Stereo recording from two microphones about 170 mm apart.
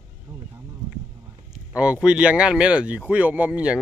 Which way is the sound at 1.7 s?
5° right (ahead or behind).